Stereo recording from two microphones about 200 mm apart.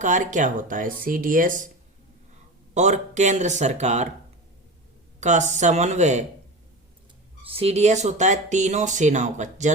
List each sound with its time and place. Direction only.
0.0 s speech: 40° right (ahead or behind)
2.7 s speech: 35° right (ahead or behind)
5.2 s speech: 35° right (ahead or behind)
7.4 s speech: 30° right (ahead or behind)